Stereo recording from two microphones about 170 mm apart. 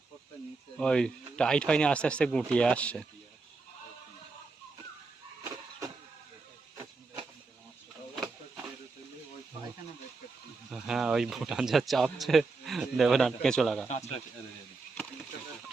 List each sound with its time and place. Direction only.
0.8 s speech: 5° left (ahead or behind)
10.7 s speech: 5° right (ahead or behind)
13.8 s speech: 40° left (ahead or behind)